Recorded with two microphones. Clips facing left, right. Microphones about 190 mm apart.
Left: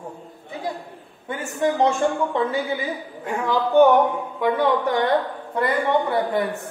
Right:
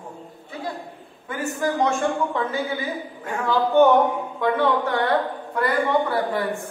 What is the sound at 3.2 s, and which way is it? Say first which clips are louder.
A woman's voice: even; 15° left (ahead or behind).